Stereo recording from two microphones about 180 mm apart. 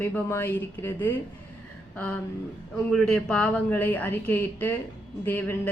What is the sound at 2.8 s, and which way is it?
Speech, 5° left (ahead or behind).